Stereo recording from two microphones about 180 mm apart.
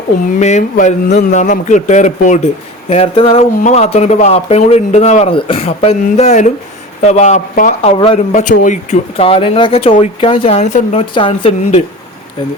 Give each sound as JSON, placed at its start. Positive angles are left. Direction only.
{"t": 0.3, "sound": "speech", "side_deg": 40}
{"t": 7.8, "sound": "speech", "side_deg": 30}
{"t": 8.3, "sound": "speech", "side_deg": 45}
{"t": 11.0, "sound": "speech", "side_deg": 30}